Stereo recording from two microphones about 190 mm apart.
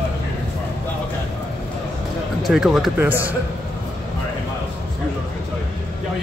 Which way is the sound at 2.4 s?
Centre (ahead or behind).